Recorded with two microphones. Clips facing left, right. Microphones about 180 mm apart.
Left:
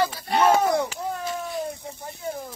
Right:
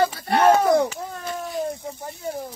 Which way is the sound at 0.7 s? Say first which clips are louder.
Right 4 dB; 45° right (ahead or behind).